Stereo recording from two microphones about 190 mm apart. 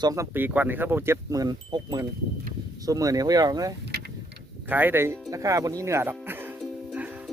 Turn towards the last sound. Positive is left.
turn(degrees=-10)  # may be behind; listen again after turning